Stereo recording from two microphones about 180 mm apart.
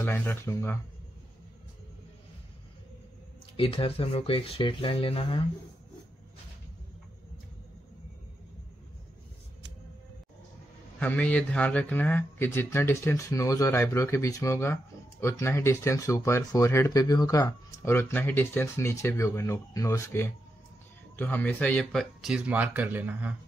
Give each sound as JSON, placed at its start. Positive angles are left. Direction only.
{"t": 0.0, "sound": "speech", "side_deg": 10}
{"t": 3.5, "sound": "speech", "side_deg": 30}
{"t": 11.0, "sound": "speech", "side_deg": 10}